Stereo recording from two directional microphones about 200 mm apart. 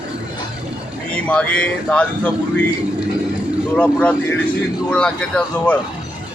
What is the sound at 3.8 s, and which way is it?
Speech, 5° left (ahead or behind).